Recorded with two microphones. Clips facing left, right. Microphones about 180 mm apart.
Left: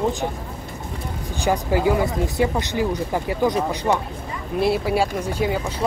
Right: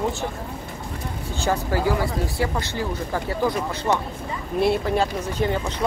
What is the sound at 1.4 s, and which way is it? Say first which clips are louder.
Speech: left 3 dB; 15° left (ahead or behind).